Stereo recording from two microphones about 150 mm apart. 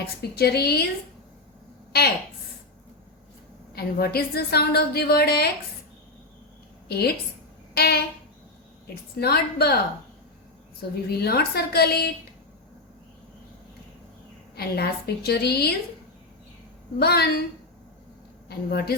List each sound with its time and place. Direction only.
0.2 s a woman's voice: 90° left
1.9 s a woman's voice: 90° left
3.8 s a woman's voice: 90° left
6.8 s a woman's voice: 90° left
9.1 s a woman's voice: 90° left
11.1 s a woman's voice: 90° left
14.5 s a woman's voice: 90° left
17.0 s a woman's voice: 90° left
18.4 s a woman's voice: 90° left